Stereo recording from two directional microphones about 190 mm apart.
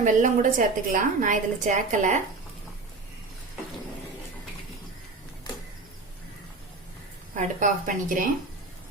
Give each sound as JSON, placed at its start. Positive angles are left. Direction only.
{"t": 0.0, "sound": "a woman's voice", "side_deg": -45}
{"t": 7.3, "sound": "a woman's voice", "side_deg": -40}